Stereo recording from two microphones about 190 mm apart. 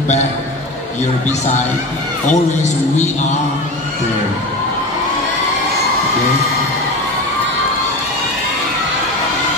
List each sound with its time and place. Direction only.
2.2 s a man's voice: 40° left (ahead or behind)